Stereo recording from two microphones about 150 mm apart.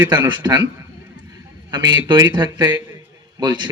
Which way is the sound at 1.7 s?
30° right (ahead or behind).